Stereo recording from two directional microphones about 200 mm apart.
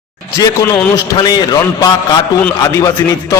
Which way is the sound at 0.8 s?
15° left (ahead or behind).